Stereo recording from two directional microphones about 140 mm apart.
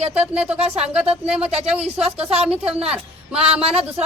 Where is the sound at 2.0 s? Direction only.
45° right (ahead or behind).